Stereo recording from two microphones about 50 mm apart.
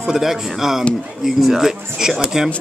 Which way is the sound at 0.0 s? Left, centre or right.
Centre.